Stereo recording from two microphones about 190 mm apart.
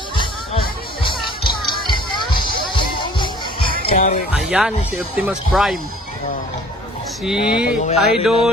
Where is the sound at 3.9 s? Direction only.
45° left (ahead or behind).